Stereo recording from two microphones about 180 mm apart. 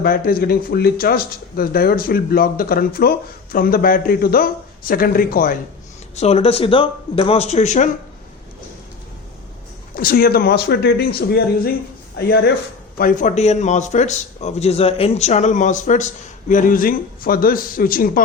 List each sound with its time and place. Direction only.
0.0 s a man's voice: 55° left (ahead or behind)
6.1 s speech: 35° left (ahead or behind)
9.9 s speech: 55° left (ahead or behind)
13.0 s a man's voice: 45° left (ahead or behind)